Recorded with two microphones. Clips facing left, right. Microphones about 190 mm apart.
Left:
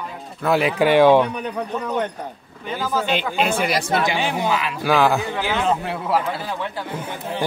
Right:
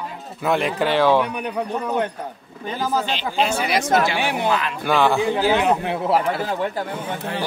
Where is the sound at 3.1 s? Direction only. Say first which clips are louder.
Left 1 dB; 55° left (ahead or behind).